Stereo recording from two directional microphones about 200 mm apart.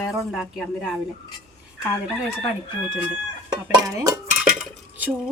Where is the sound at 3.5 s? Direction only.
15° right (ahead or behind).